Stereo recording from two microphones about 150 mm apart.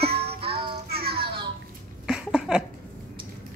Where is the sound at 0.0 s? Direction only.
40° right (ahead or behind).